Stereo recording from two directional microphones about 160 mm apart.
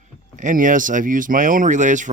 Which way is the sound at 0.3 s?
55° right (ahead or behind).